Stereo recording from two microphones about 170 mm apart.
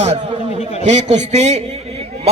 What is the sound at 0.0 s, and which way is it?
A man's voice, 40° right (ahead or behind).